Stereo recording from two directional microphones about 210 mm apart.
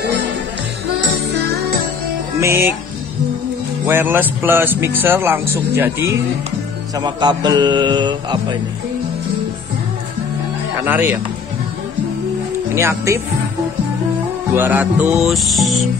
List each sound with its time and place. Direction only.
2.4 s speech: 10° right (ahead or behind)
3.8 s speech: 10° right (ahead or behind)
7.0 s mantra: 20° right (ahead or behind)
10.9 s speech: 10° right (ahead or behind)
12.7 s speech: 15° right (ahead or behind)
14.5 s music: 10° right (ahead or behind)